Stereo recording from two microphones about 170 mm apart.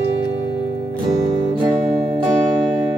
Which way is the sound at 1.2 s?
25° right (ahead or behind).